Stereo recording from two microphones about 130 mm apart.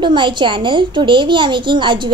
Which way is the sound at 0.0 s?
35° right (ahead or behind).